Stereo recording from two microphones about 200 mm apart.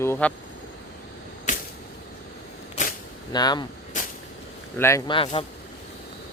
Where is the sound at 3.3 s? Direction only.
20° left (ahead or behind).